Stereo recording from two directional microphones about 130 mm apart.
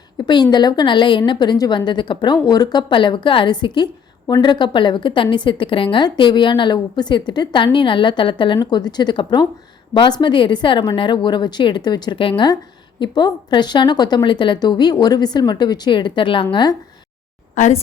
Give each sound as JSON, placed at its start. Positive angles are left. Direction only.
{"t": 0.2, "sound": "a sound", "side_deg": 35}
{"t": 0.5, "sound": "a woman's voice", "side_deg": 30}
{"t": 17.5, "sound": "a woman's voice", "side_deg": 70}